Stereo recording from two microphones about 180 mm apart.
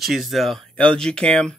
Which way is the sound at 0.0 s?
Centre (ahead or behind).